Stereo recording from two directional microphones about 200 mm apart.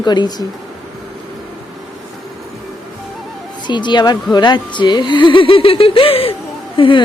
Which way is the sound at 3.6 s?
25° left (ahead or behind).